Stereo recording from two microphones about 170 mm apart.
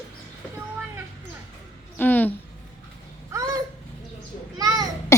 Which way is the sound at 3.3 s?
20° right (ahead or behind).